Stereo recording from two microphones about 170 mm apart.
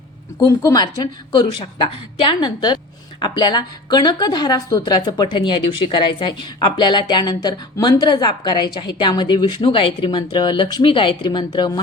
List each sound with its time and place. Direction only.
0.4 s a woman's voice: 20° left (ahead or behind)